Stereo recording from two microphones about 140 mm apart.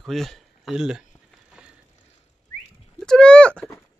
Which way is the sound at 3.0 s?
5° left (ahead or behind).